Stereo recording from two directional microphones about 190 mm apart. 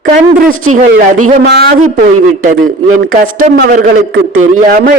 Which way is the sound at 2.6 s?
90° right.